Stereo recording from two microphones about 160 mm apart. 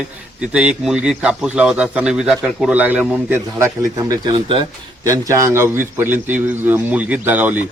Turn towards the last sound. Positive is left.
turn(degrees=-10)  # may be behind; listen again after turning